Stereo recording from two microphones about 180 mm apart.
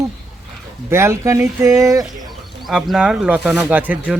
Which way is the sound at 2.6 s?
Centre (ahead or behind).